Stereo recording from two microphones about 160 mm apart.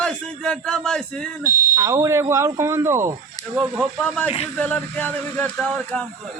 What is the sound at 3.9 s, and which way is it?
A man's voice, 10° left (ahead or behind).